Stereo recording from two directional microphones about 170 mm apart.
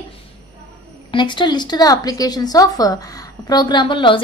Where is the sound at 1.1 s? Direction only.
25° left (ahead or behind).